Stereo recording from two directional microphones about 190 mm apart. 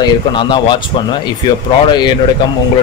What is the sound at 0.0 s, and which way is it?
Speech, 25° left (ahead or behind).